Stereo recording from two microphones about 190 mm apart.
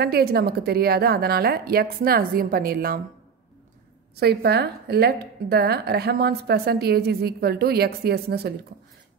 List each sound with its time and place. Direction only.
0.0 s a woman's voice: 55° right (ahead or behind)
4.2 s a woman's voice: 55° right (ahead or behind)